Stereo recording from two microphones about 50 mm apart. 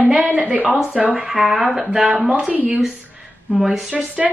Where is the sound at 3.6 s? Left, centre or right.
Centre.